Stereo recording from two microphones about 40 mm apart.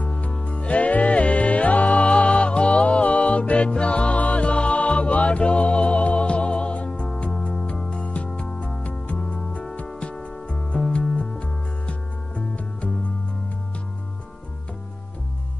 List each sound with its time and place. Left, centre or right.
0.1 s music: left
7.9 s music: left
8.3 s music: centre
8.8 s music: left